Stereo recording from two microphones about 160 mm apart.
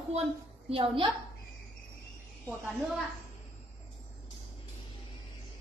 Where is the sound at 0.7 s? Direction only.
35° right (ahead or behind).